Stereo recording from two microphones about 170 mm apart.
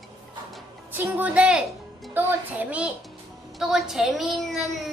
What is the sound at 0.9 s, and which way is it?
A child's voice, 10° right (ahead or behind).